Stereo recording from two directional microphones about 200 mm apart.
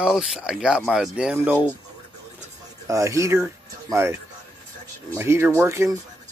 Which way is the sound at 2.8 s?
15° right (ahead or behind).